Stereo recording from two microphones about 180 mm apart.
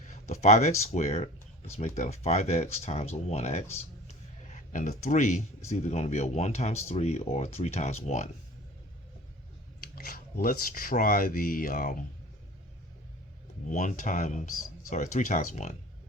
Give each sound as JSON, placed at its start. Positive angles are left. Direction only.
{"t": 0.4, "sound": "speech", "side_deg": 40}
{"t": 9.9, "sound": "speech", "side_deg": 55}
{"t": 13.7, "sound": "speech", "side_deg": 45}